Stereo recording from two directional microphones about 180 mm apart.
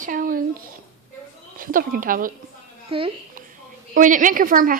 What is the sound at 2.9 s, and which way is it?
Speech, 30° right (ahead or behind).